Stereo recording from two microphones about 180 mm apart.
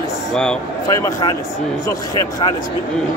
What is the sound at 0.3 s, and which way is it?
Speech, 5° left (ahead or behind).